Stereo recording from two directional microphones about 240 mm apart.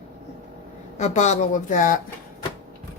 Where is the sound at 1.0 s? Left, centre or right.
Left.